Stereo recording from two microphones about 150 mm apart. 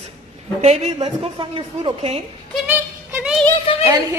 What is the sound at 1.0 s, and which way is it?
A woman's voice, 35° right (ahead or behind).